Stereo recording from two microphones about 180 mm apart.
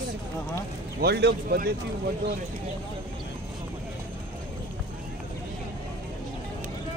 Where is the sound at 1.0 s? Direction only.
65° right (ahead or behind).